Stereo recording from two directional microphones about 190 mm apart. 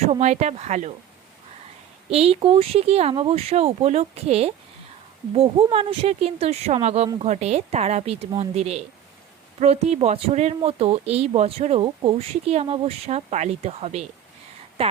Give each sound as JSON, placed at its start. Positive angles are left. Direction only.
{"t": 0.0, "sound": "speech", "side_deg": -35}
{"t": 2.0, "sound": "speech", "side_deg": -30}